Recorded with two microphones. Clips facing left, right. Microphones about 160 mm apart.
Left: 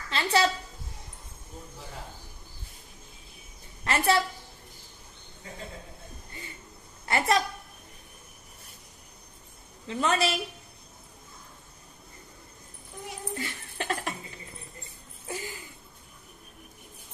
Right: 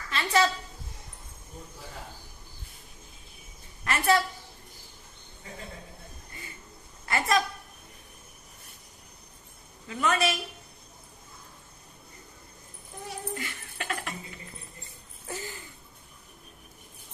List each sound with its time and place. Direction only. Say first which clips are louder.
0.1 s a woman's voice: even; 30° left (ahead or behind)
3.8 s a woman's voice: even; 30° left (ahead or behind)
7.0 s a woman's voice: left 1 dB; 30° left (ahead or behind)
9.8 s a woman's voice: even; 30° left (ahead or behind)
13.1 s a sound: even; 30° left (ahead or behind)
15.3 s a sound: left 1 dB; 15° left (ahead or behind)